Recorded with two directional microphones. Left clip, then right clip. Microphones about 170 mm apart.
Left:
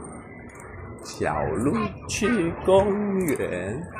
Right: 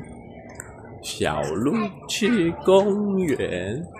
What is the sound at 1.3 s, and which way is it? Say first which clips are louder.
Speech: left 2 dB; 40° right (ahead or behind).